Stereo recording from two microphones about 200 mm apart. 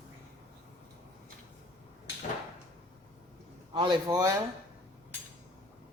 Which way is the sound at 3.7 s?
25° right (ahead or behind).